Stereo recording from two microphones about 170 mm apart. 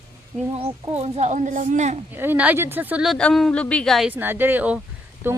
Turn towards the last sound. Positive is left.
turn(degrees=-10)  # may be behind; listen again after turning